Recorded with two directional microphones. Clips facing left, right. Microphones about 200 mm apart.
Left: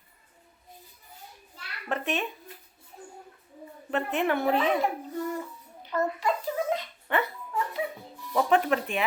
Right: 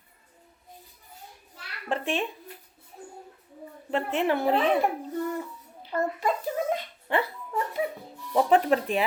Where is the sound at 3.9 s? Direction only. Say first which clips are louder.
Right 1 dB; 30° right (ahead or behind).